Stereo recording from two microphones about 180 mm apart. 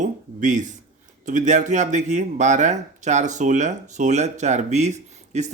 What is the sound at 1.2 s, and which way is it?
Speech, 45° right (ahead or behind).